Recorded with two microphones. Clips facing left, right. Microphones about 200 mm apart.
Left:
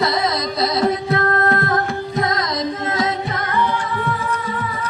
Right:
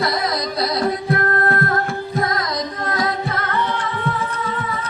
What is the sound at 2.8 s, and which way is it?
Music, 25° left (ahead or behind).